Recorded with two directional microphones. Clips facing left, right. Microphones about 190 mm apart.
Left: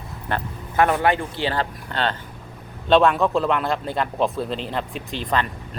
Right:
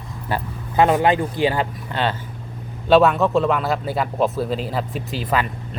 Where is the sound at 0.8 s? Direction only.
20° right (ahead or behind).